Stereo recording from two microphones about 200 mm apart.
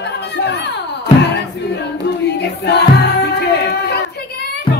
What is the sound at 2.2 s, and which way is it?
Choir, 55° left (ahead or behind).